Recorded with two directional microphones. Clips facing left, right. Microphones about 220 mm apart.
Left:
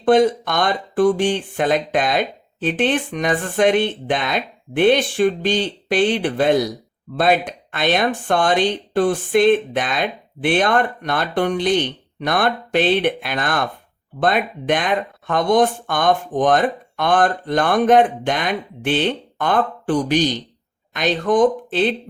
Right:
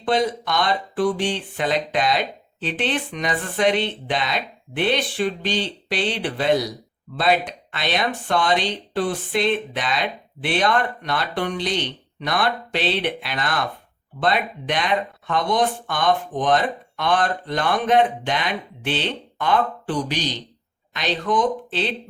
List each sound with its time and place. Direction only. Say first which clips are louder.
0.0 s speech: left 7 dB; 50° left (ahead or behind)